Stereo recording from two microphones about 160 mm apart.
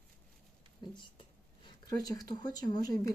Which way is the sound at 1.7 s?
25° left (ahead or behind).